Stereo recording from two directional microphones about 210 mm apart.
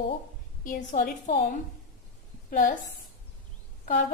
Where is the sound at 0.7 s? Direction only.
40° left (ahead or behind).